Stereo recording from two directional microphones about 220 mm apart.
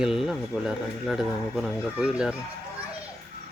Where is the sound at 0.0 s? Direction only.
Centre (ahead or behind).